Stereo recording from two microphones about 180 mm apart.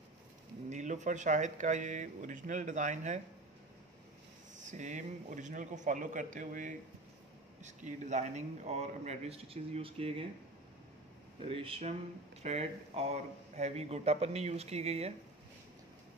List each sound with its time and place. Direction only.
0.7 s speech: 40° right (ahead or behind)
4.6 s speech: 45° right (ahead or behind)
11.4 s speech: 30° right (ahead or behind)